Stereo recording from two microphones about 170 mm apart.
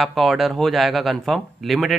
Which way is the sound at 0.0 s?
Centre (ahead or behind).